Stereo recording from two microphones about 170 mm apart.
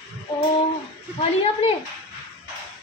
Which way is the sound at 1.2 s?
35° left (ahead or behind).